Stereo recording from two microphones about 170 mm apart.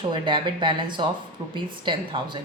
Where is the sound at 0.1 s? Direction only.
30° right (ahead or behind).